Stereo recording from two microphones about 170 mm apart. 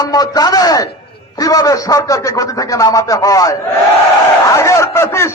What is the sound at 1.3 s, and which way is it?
Speech, 20° left (ahead or behind).